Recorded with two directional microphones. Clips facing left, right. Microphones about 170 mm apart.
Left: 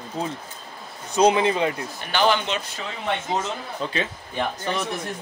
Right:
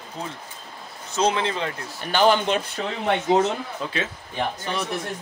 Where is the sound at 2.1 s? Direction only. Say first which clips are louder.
Right 3 dB; 45° right (ahead or behind).